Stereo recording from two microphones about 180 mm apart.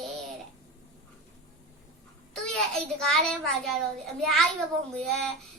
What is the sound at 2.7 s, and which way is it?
A child's voice, 5° left (ahead or behind).